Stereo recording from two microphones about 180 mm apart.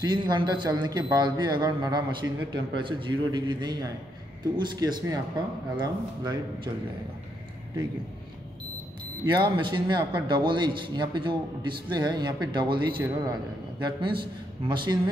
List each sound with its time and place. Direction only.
0.0 s a man's voice: 25° right (ahead or behind)
9.2 s a man's voice: 25° right (ahead or behind)